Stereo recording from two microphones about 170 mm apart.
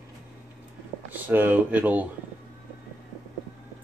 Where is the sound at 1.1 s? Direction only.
10° right (ahead or behind).